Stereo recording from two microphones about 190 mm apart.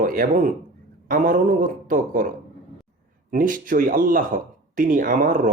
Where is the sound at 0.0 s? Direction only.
45° right (ahead or behind).